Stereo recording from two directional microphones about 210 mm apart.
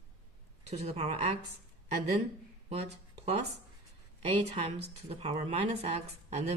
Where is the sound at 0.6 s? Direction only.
30° right (ahead or behind).